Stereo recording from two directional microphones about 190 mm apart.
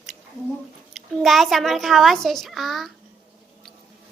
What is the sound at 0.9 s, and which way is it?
A child's voice, centre (ahead or behind).